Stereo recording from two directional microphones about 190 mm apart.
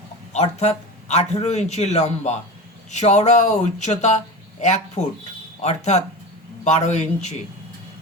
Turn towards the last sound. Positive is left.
turn(degrees=35)  # may be behind; listen again after turning